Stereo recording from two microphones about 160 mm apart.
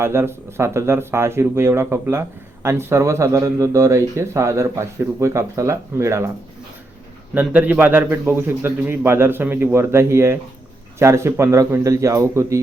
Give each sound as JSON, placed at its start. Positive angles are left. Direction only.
{"t": 0.0, "sound": "speech", "side_deg": -15}
{"t": 7.3, "sound": "a man's voice", "side_deg": -10}